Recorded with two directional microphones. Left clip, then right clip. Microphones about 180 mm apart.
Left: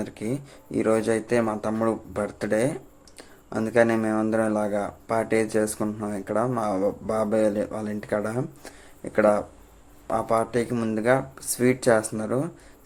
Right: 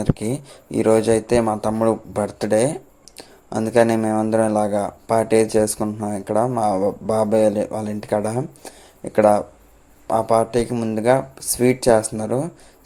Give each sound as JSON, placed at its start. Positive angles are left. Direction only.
{"t": 0.0, "sound": "speech", "side_deg": -25}
{"t": 10.7, "sound": "speech", "side_deg": -10}
{"t": 10.9, "sound": "speech", "side_deg": -20}